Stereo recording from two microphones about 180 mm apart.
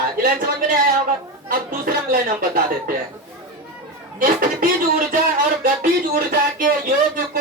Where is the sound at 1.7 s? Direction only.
50° right (ahead or behind).